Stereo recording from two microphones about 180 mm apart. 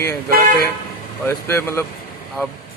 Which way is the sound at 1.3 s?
15° left (ahead or behind).